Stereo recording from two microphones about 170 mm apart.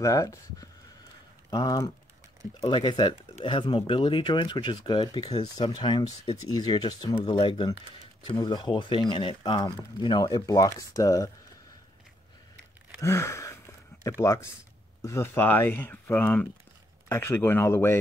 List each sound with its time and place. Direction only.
0.0 s speech: 20° left (ahead or behind)
13.0 s gasp: 15° left (ahead or behind)
14.0 s speech: 20° left (ahead or behind)